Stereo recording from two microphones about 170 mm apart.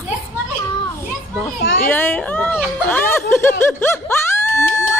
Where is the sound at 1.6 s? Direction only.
60° left (ahead or behind).